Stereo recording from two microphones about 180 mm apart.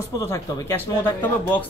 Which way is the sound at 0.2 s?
15° left (ahead or behind).